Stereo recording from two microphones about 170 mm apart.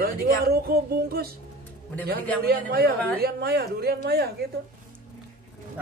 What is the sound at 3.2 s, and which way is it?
A woman's voice, 65° right (ahead or behind).